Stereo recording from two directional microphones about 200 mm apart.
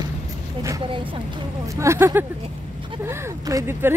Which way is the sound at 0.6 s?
15° right (ahead or behind).